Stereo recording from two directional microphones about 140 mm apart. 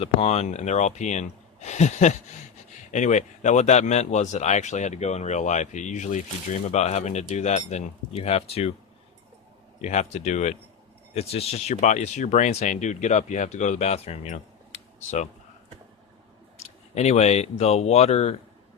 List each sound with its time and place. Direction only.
0.0 s speech: 45° left (ahead or behind)
9.8 s speech: 55° left (ahead or behind)
16.6 s speech: 50° left (ahead or behind)